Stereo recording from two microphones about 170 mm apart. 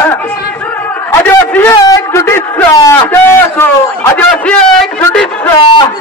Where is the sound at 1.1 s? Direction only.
15° left (ahead or behind).